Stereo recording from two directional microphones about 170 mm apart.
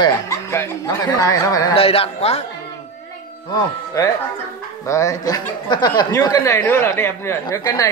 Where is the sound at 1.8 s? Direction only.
35° left (ahead or behind).